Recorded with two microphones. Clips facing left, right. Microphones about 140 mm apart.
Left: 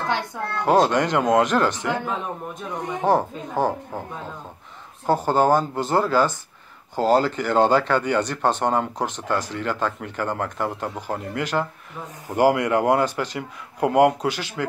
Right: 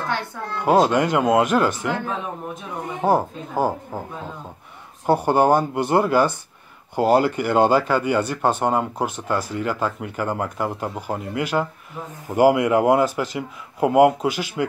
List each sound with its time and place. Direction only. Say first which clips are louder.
0.7 s speech: right 1 dB; 5° right (ahead or behind)
5.0 s speech: right 2 dB; 15° right (ahead or behind)